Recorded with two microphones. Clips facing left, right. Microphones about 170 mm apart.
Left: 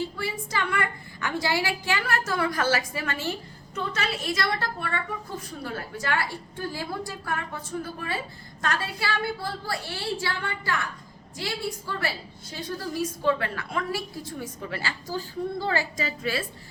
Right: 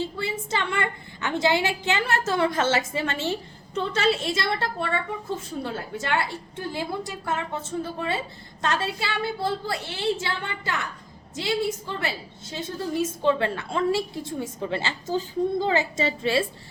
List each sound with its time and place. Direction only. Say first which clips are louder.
0.2 s a woman's voice: right 2 dB; 25° right (ahead or behind)